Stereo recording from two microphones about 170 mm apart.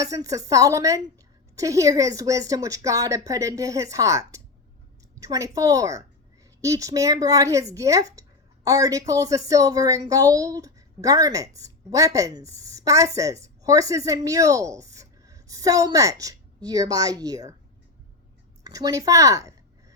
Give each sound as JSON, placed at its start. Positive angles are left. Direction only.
{"t": 0.0, "sound": "speech", "side_deg": -20}
{"t": 18.6, "sound": "speech", "side_deg": -20}